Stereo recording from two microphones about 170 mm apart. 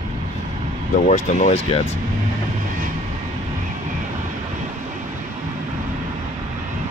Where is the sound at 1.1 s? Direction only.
45° left (ahead or behind).